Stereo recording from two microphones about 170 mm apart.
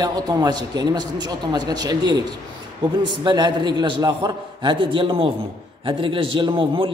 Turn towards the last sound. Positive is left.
turn(degrees=-30)  # may be behind; listen again after turning